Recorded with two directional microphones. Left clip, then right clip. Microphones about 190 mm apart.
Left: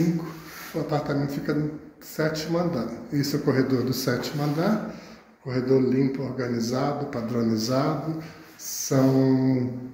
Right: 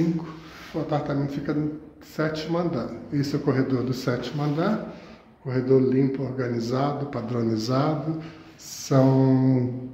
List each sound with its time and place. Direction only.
0.8 s a man's voice: 5° right (ahead or behind)